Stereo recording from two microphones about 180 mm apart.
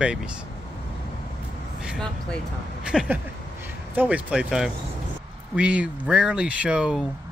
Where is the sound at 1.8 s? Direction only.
Centre (ahead or behind).